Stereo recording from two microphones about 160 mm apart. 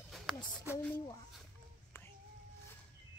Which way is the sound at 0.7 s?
10° left (ahead or behind).